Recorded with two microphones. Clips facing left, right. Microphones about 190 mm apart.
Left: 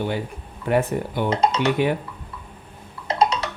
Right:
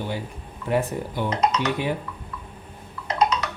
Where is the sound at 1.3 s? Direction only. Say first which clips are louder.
Left 3 dB; 30° left (ahead or behind).